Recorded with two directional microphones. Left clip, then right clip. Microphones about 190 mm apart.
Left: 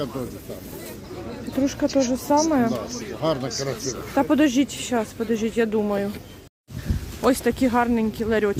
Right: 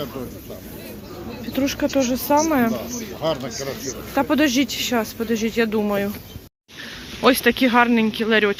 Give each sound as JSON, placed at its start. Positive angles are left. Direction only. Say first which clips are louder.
{"t": 1.5, "sound": "speech", "louder": "right 1 dB", "side_deg": 15}
{"t": 2.9, "sound": "speech", "louder": "right 1 dB", "side_deg": 70}
{"t": 4.1, "sound": "speech", "louder": "right 1 dB", "side_deg": 20}
{"t": 7.3, "sound": "speech", "louder": "right 4 dB", "side_deg": 15}